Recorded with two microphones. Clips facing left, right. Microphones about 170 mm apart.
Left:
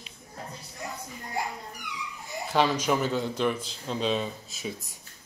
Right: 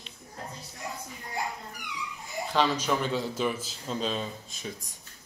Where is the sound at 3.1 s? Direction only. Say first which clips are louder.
Left 2 dB; 5° right (ahead or behind).